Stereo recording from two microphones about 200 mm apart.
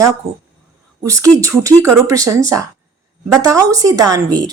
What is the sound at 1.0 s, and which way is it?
Speech, 15° right (ahead or behind).